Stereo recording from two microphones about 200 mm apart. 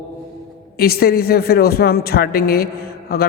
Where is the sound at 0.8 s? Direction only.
50° left (ahead or behind).